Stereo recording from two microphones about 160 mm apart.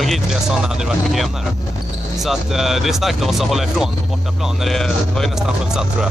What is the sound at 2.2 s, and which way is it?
Speech, centre (ahead or behind).